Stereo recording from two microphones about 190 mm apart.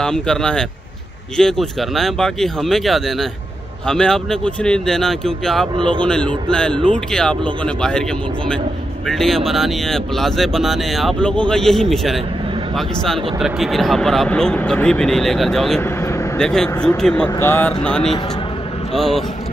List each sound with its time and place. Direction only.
0.0 s speech: 5° left (ahead or behind)
5.8 s speech: 25° right (ahead or behind)
6.0 s speech: 5° left (ahead or behind)
9.0 s speech: centre (ahead or behind)